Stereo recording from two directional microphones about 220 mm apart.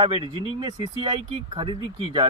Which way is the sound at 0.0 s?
25° right (ahead or behind).